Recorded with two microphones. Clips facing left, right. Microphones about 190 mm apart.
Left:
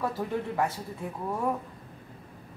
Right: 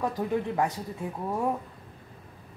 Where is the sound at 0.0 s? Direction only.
15° right (ahead or behind).